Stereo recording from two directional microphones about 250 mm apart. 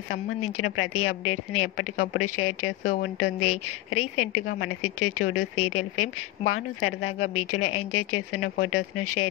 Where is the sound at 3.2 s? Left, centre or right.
Left.